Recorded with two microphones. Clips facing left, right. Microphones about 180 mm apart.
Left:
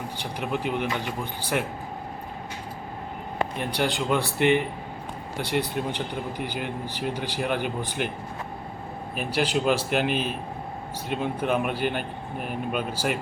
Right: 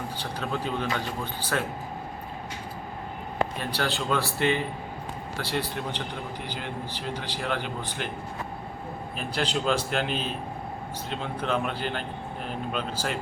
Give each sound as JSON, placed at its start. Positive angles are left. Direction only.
{"t": 0.2, "sound": "speech", "side_deg": 15}
{"t": 3.6, "sound": "speech", "side_deg": 15}
{"t": 7.1, "sound": "speech", "side_deg": 10}
{"t": 9.1, "sound": "speech", "side_deg": 10}